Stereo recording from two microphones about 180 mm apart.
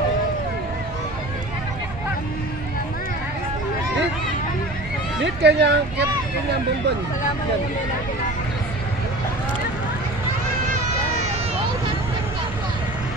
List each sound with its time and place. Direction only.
5.2 s speech: 70° right (ahead or behind)